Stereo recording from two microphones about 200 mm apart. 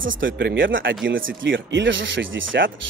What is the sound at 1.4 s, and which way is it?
Speech, 70° right (ahead or behind).